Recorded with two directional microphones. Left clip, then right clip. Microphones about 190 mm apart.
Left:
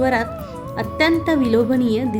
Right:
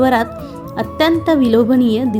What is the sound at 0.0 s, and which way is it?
A woman's voice, 30° right (ahead or behind).